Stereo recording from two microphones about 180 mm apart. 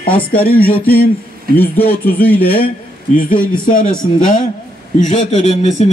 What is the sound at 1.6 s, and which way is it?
Speech, 10° left (ahead or behind).